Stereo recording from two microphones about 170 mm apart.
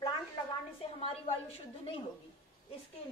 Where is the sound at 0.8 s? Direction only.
35° left (ahead or behind).